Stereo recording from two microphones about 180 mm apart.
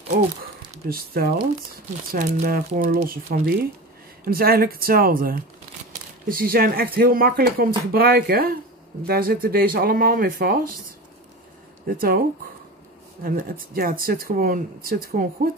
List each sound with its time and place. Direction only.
0.8 s speech: 55° right (ahead or behind)
2.1 s speech: 45° right (ahead or behind)
11.9 s speech: 55° right (ahead or behind)
13.2 s speech: 55° right (ahead or behind)